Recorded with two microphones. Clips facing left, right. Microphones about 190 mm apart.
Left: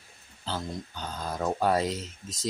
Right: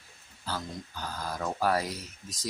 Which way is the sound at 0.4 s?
20° left (ahead or behind).